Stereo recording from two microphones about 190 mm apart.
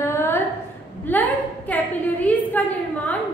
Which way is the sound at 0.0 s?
15° left (ahead or behind).